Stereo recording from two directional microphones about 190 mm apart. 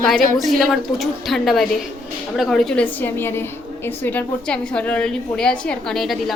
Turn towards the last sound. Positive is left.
turn(degrees=0)  # may be behind; listen again after turning